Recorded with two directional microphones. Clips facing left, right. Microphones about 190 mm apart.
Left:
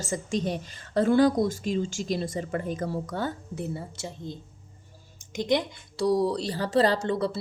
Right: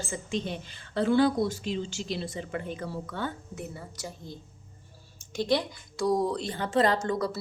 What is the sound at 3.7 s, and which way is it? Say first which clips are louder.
A woman's voice: left 5 dB; 25° left (ahead or behind).